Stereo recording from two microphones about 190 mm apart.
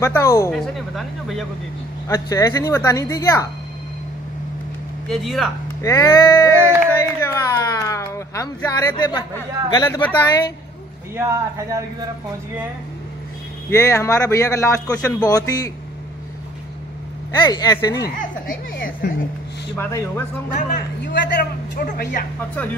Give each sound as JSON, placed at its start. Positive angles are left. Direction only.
{"t": 0.0, "sound": "speech", "side_deg": 15}
{"t": 0.6, "sound": "speech", "side_deg": 0}
{"t": 2.0, "sound": "speech", "side_deg": 20}
{"t": 5.1, "sound": "speech", "side_deg": 0}
{"t": 5.8, "sound": "speech", "side_deg": 15}
{"t": 11.1, "sound": "speech", "side_deg": -15}
{"t": 13.7, "sound": "speech", "side_deg": 15}
{"t": 17.5, "sound": "speech", "side_deg": 20}
{"t": 18.0, "sound": "a man's voice", "side_deg": 50}
{"t": 19.8, "sound": "speech", "side_deg": 15}
{"t": 20.5, "sound": "a man's voice", "side_deg": 60}